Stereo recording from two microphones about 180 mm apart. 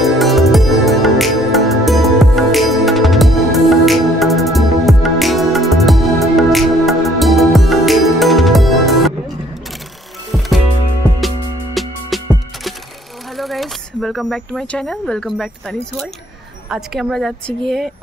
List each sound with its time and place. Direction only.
0.0 s music: centre (ahead or behind)
10.3 s music: centre (ahead or behind)
13.4 s a woman's voice: centre (ahead or behind)